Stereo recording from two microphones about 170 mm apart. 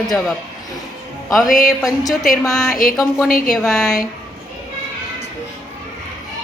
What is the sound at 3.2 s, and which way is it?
Speech, 55° left (ahead or behind).